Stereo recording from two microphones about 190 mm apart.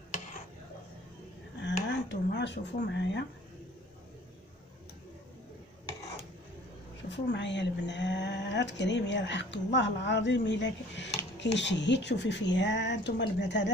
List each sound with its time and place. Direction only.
1.9 s speech: 70° left (ahead or behind)
7.1 s speech: 65° left (ahead or behind)